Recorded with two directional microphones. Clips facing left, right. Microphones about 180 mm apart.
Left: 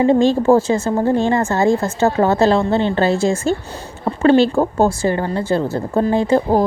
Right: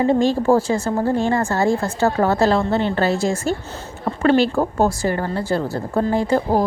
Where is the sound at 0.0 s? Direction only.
25° left (ahead or behind).